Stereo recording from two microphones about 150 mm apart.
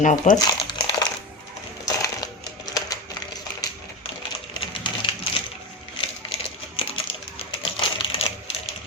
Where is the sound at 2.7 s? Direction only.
25° left (ahead or behind).